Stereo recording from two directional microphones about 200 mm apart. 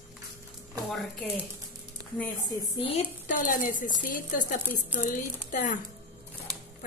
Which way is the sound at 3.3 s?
45° left (ahead or behind).